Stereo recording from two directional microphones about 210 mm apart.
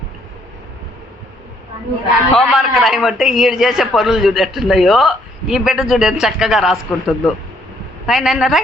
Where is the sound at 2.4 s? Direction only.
Centre (ahead or behind).